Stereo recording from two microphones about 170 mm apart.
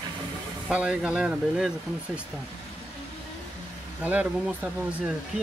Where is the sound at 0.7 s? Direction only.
5° right (ahead or behind).